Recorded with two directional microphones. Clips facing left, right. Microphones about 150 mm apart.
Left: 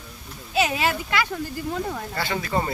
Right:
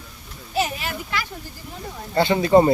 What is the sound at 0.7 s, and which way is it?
Speech, 90° left.